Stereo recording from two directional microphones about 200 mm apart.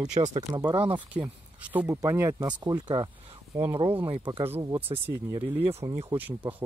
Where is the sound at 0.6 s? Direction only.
20° right (ahead or behind).